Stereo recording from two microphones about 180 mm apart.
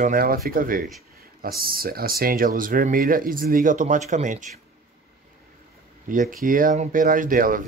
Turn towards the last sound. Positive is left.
turn(degrees=-50)  # may be behind; listen again after turning